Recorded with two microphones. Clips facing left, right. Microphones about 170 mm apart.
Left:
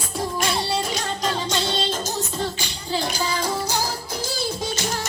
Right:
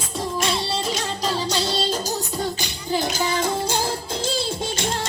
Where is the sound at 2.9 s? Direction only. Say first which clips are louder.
Right 2 dB; 20° right (ahead or behind).